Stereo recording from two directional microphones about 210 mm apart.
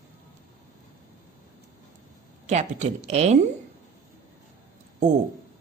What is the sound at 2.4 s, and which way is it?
Speech, 35° right (ahead or behind).